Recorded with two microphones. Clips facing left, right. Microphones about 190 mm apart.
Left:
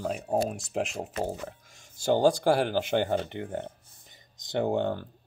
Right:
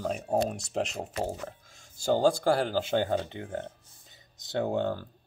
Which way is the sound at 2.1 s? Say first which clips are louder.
Left 1 dB; 15° left (ahead or behind).